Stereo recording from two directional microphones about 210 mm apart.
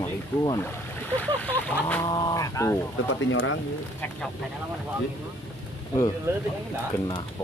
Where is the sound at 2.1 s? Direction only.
20° left (ahead or behind).